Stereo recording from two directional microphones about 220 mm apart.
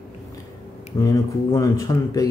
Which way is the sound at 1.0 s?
15° left (ahead or behind).